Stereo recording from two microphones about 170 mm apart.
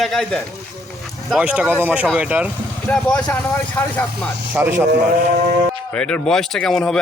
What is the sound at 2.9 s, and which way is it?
Speech, 5° left (ahead or behind).